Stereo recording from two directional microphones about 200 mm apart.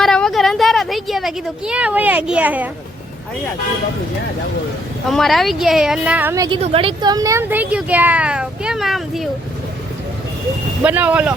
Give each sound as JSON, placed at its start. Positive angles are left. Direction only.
{"t": 0.0, "sound": "speech", "side_deg": 0}
{"t": 5.0, "sound": "a woman's voice", "side_deg": 0}
{"t": 6.6, "sound": "speech", "side_deg": -30}
{"t": 10.8, "sound": "speech", "side_deg": -5}